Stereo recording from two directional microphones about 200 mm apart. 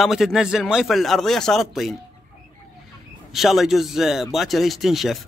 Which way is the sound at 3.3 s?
Centre (ahead or behind).